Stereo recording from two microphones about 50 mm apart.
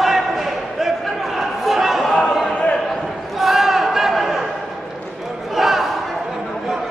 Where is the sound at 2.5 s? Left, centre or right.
Left.